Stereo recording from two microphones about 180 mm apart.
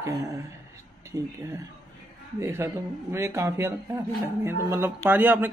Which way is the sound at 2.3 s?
15° right (ahead or behind).